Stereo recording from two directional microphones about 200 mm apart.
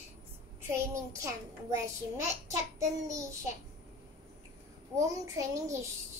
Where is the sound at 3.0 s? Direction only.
15° right (ahead or behind).